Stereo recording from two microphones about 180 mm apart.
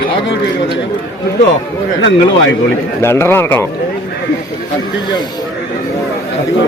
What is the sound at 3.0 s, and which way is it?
Speech, 15° left (ahead or behind).